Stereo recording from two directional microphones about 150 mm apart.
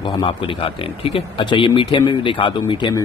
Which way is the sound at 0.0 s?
35° left (ahead or behind).